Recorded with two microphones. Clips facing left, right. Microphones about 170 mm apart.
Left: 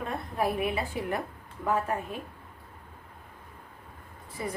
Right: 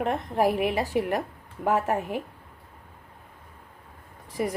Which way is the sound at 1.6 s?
85° right.